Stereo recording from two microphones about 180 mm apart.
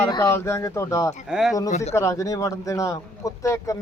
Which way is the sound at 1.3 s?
5° right (ahead or behind).